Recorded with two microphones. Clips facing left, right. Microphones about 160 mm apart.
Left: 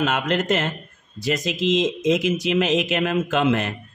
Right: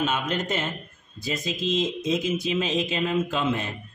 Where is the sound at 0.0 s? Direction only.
90° left.